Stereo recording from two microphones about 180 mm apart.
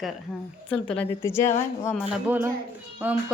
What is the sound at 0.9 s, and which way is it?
Speech, 15° left (ahead or behind).